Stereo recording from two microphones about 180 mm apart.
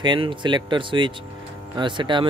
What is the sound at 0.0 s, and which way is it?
Speech, 25° right (ahead or behind).